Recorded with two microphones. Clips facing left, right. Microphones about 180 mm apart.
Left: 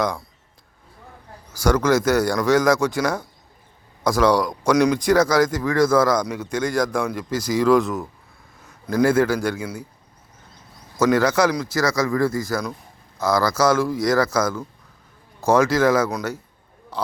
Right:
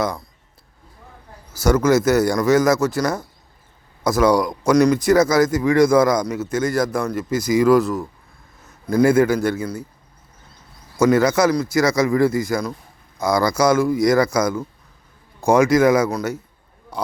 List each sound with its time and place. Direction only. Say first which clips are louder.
1.5 s speech: right 2 dB; 5° right (ahead or behind)
6.2 s a man's voice: right 3 dB; 5° right (ahead or behind)
10.9 s speech: right 2 dB; 10° right (ahead or behind)
11.8 s speech: right 3 dB; 20° right (ahead or behind)
16.0 s speech: right 3 dB; centre (ahead or behind)